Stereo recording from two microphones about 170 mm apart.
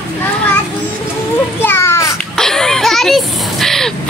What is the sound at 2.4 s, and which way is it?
Speech, 5° left (ahead or behind).